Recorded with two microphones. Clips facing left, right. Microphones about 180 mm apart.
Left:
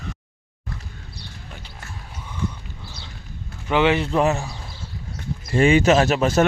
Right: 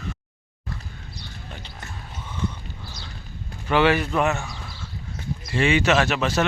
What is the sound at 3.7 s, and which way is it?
Speech, 20° left (ahead or behind).